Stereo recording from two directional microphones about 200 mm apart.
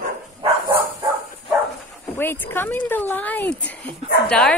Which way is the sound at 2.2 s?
10° left (ahead or behind).